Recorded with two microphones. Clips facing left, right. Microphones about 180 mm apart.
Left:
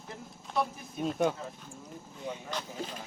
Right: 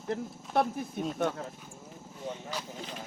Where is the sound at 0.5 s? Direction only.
60° right (ahead or behind).